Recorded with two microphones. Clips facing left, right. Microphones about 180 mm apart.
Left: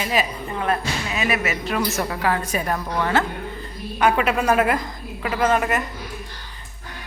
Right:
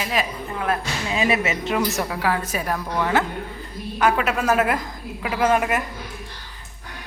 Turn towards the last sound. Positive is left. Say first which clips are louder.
# even
turn(degrees=-10)  # may be behind; listen again after turning